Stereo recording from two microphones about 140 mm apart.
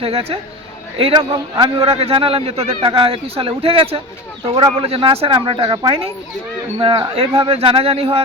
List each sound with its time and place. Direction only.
0.0 s a man's voice: 45° right (ahead or behind)
1.8 s a man's voice: 45° right (ahead or behind)